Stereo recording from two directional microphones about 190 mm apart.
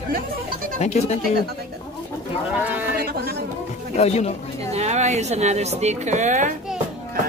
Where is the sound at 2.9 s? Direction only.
55° right (ahead or behind).